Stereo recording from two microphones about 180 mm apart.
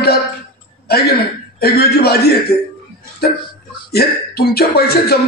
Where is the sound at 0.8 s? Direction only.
60° left (ahead or behind).